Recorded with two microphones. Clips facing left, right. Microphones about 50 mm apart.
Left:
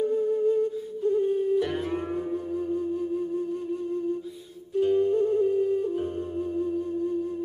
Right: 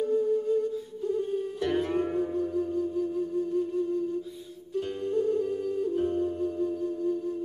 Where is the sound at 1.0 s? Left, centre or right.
Centre.